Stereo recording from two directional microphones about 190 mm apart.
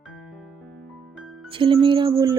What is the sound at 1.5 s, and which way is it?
Music, 25° right (ahead or behind).